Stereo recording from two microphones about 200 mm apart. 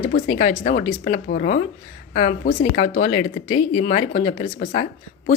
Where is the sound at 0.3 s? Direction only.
35° left (ahead or behind).